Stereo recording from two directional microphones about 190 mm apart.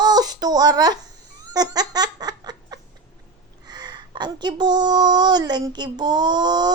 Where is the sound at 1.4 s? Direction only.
20° right (ahead or behind).